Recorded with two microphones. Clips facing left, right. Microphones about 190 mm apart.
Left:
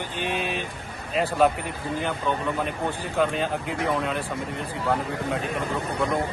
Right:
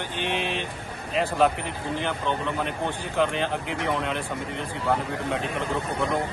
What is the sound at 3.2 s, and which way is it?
Speech, 5° left (ahead or behind).